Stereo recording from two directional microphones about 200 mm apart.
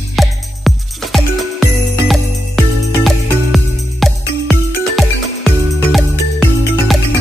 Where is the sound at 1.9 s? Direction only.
Centre (ahead or behind).